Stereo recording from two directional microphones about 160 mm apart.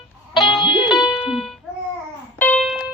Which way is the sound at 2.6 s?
Centre (ahead or behind).